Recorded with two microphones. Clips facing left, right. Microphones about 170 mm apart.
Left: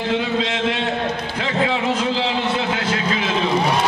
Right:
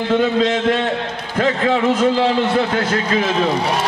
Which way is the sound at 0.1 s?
50° right (ahead or behind).